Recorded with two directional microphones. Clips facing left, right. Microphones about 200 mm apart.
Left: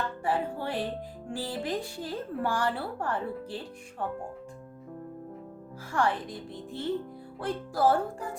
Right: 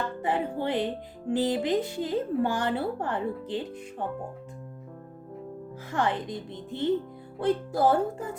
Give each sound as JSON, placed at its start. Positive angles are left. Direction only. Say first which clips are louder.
{"t": 0.2, "sound": "speech", "louder": "right 2 dB", "side_deg": -20}
{"t": 5.9, "sound": "speech", "louder": "right 1 dB", "side_deg": -20}